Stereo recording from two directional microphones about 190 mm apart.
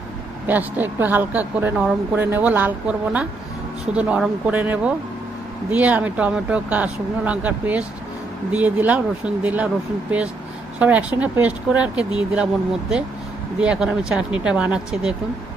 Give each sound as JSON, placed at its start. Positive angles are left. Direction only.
{"t": 0.5, "sound": "speech", "side_deg": -10}
{"t": 10.8, "sound": "speech", "side_deg": -5}
{"t": 13.6, "sound": "speech", "side_deg": -5}